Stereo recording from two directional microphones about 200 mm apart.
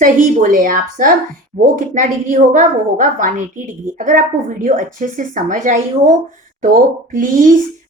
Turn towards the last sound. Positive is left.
turn(degrees=-40)  # may be behind; listen again after turning